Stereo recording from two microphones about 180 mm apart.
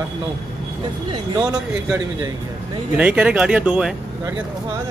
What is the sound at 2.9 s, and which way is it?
Speech, 5° right (ahead or behind).